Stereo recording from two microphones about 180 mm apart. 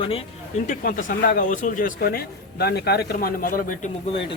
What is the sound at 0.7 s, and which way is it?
Speech, 50° left (ahead or behind).